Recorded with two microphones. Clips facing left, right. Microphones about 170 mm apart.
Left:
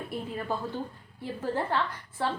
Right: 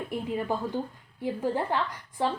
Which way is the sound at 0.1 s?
15° right (ahead or behind).